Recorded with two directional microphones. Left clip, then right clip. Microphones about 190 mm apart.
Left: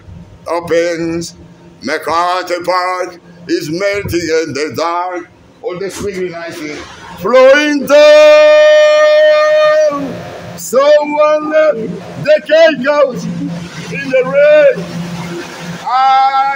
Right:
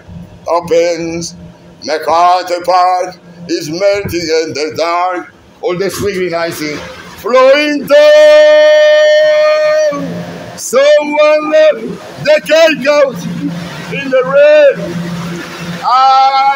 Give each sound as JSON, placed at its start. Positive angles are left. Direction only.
{"t": 0.5, "sound": "a man's voice", "side_deg": 30}
{"t": 5.7, "sound": "a man's voice", "side_deg": -15}
{"t": 7.2, "sound": "a man's voice", "side_deg": 25}
{"t": 10.6, "sound": "music", "side_deg": 20}
{"t": 12.2, "sound": "a man's voice", "side_deg": 20}
{"t": 13.9, "sound": "music", "side_deg": 15}
{"t": 15.9, "sound": "a man's voice", "side_deg": 30}